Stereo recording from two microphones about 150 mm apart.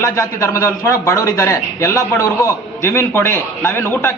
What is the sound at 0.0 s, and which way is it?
A man's voice, 20° left (ahead or behind).